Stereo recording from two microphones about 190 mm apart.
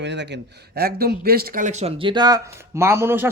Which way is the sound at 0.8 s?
55° right (ahead or behind).